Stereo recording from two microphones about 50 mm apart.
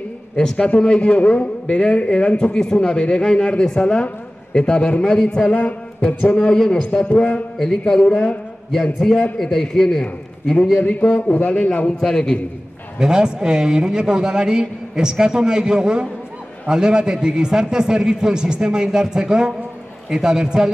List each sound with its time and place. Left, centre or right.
0.4 s a man's voice: centre
5.5 s a man's voice: left
7.1 s a man's voice: left
7.5 s speech: centre
7.8 s a man's voice: left
9.0 s a man's voice: centre
10.8 s a man's voice: left
12.0 s a man's voice: centre
13.0 s a man's voice: centre